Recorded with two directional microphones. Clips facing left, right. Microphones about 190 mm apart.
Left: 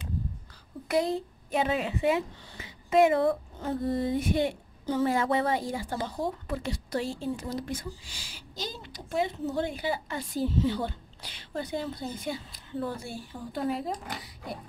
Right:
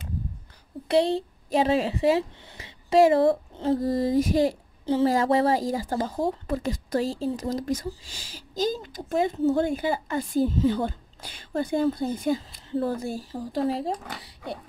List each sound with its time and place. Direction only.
0.8 s a woman's voice: 30° right (ahead or behind)